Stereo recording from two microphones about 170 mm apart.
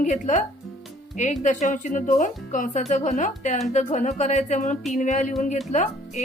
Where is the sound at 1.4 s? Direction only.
45° left (ahead or behind).